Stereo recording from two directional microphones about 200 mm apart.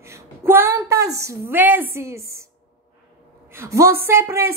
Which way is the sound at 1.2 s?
15° right (ahead or behind).